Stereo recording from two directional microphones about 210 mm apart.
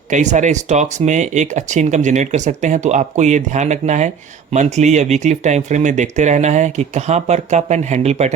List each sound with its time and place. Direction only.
0.1 s speech: 35° right (ahead or behind)